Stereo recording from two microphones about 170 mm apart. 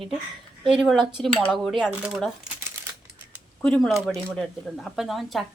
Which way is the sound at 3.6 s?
Centre (ahead or behind).